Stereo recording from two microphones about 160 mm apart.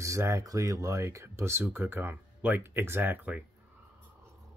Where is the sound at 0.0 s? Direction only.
20° right (ahead or behind).